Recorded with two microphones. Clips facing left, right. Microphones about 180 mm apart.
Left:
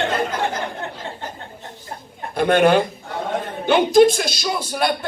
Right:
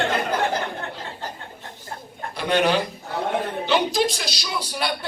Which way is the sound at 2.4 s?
50° left (ahead or behind).